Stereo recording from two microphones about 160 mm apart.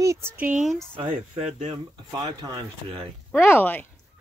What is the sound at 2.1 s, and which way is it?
Speech, 25° right (ahead or behind).